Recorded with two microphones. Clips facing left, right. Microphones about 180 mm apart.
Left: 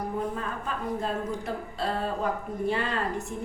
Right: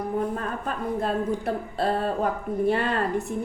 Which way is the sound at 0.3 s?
55° right (ahead or behind).